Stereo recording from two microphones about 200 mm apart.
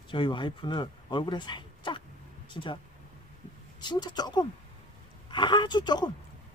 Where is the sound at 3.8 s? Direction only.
20° left (ahead or behind).